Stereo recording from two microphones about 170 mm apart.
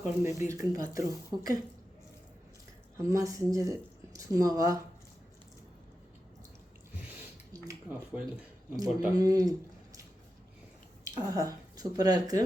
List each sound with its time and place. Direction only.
0.0 s speech: 15° right (ahead or behind)
3.0 s speech: 20° right (ahead or behind)
7.5 s a sound: 20° right (ahead or behind)
8.7 s a man's voice: 20° right (ahead or behind)
11.0 s speech: 20° right (ahead or behind)